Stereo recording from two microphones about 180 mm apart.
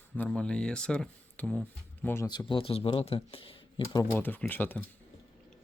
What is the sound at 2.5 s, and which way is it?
Speech, 30° left (ahead or behind).